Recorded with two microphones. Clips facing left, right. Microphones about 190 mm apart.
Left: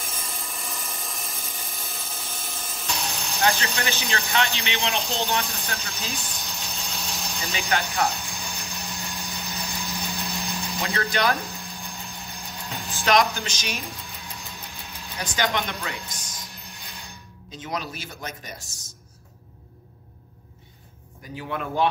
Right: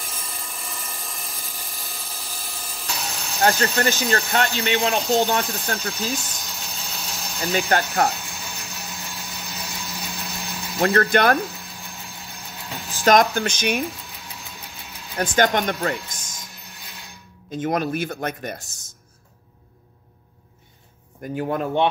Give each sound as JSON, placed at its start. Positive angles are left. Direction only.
{"t": 0.0, "sound": "wood", "side_deg": 0}
{"t": 3.3, "sound": "speech", "side_deg": -40}
{"t": 5.9, "sound": "engine", "side_deg": 0}
{"t": 7.5, "sound": "speech", "side_deg": -45}
{"t": 8.1, "sound": "a sound", "side_deg": -5}
{"t": 10.8, "sound": "speech", "side_deg": -55}
{"t": 11.4, "sound": "vehicle", "side_deg": -5}
{"t": 13.0, "sound": "speech", "side_deg": -50}
{"t": 13.8, "sound": "engine", "side_deg": 0}
{"t": 15.1, "sound": "speech", "side_deg": -55}
{"t": 16.3, "sound": "music", "side_deg": -5}
{"t": 17.5, "sound": "speech", "side_deg": -55}
{"t": 18.6, "sound": "speech", "side_deg": 0}
{"t": 21.2, "sound": "speech", "side_deg": -50}